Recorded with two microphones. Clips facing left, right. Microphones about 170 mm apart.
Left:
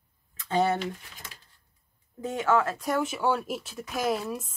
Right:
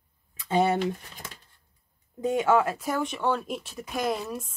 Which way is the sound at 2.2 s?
15° right (ahead or behind).